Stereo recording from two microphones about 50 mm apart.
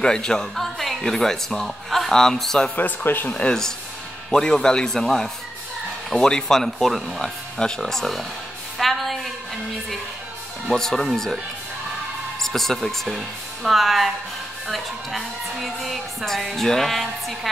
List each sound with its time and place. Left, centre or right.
0.0 s speech: centre
2.7 s speech: left
4.3 s a woman's voice: centre
7.2 s speech: centre
8.7 s music: centre
10.7 s speech: centre
12.4 s a woman's voice: centre